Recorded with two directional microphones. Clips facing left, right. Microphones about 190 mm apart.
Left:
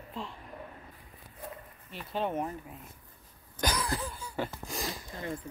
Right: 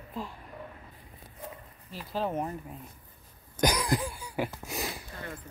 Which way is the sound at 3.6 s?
15° right (ahead or behind).